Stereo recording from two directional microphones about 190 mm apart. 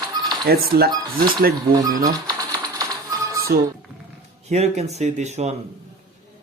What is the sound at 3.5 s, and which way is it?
Speech, 55° right (ahead or behind).